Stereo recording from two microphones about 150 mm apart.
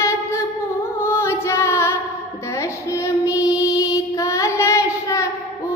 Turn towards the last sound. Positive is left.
turn(degrees=20)  # may be behind; listen again after turning